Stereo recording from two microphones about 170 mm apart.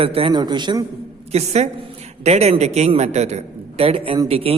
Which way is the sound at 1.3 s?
40° right (ahead or behind).